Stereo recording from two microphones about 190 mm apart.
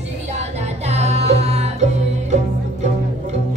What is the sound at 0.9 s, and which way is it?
Music, 35° right (ahead or behind).